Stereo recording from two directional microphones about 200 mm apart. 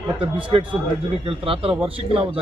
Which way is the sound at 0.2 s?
25° right (ahead or behind).